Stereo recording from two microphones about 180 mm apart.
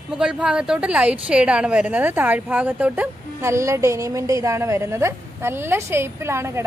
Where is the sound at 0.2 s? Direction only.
5° right (ahead or behind).